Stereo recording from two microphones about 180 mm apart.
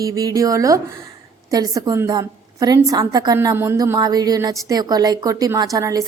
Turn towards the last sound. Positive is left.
turn(degrees=-20)  # may be behind; listen again after turning